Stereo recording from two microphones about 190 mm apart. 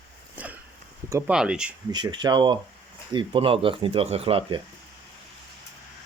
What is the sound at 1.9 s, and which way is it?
Speech, 25° right (ahead or behind).